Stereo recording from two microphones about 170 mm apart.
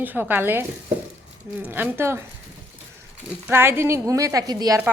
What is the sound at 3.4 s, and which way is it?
A woman's voice, 15° right (ahead or behind).